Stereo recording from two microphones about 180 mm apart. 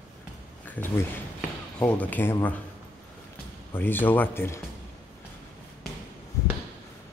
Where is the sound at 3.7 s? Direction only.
10° left (ahead or behind).